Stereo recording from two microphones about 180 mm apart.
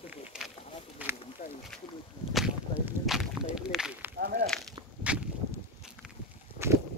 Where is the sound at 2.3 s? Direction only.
Centre (ahead or behind).